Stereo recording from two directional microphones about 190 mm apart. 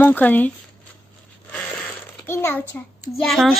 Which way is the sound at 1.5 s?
5° left (ahead or behind).